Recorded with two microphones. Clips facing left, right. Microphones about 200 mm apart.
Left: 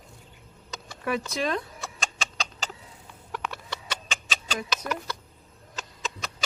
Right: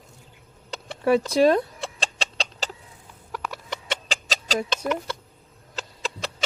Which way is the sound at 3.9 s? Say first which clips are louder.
Right 7 dB; 35° right (ahead or behind).